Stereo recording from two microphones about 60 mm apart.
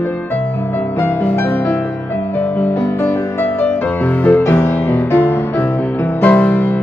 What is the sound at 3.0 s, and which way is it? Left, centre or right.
Music, left.